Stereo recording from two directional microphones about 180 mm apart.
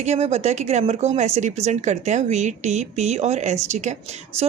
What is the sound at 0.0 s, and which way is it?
Speech, 35° right (ahead or behind).